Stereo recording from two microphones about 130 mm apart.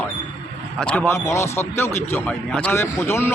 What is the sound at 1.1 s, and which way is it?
A man's voice, 20° left (ahead or behind).